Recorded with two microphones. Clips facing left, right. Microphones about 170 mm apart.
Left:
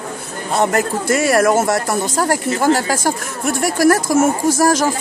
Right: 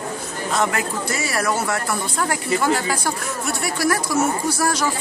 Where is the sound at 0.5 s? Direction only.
50° left (ahead or behind).